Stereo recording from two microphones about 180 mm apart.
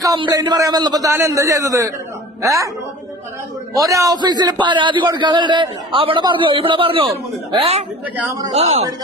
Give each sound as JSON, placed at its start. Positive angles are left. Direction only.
{"t": 0.0, "sound": "a man's voice", "side_deg": -20}
{"t": 3.8, "sound": "a man's voice", "side_deg": -20}